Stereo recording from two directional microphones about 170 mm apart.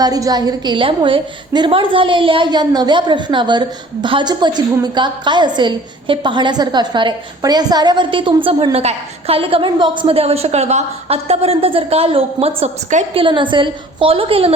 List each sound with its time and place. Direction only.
0.0 s a woman's voice: 20° right (ahead or behind); by 13.2 s 40° right (ahead or behind)
13.2 s a woman's voice: 30° right (ahead or behind)